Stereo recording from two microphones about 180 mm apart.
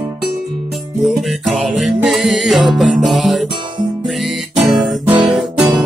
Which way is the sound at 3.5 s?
25° right (ahead or behind).